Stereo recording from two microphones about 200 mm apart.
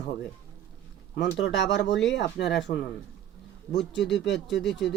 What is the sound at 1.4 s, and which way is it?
Speech, 60° left (ahead or behind).